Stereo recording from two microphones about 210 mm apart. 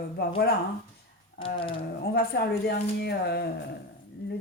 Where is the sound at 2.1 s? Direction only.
50° left (ahead or behind).